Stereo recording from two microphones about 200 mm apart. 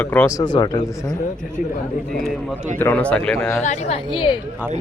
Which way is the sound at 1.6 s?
45° left (ahead or behind).